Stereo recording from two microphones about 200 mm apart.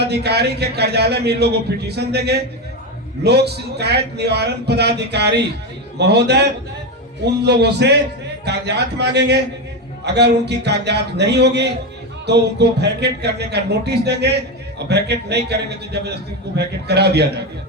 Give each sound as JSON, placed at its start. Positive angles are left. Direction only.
{"t": 0.0, "sound": "speech", "side_deg": -55}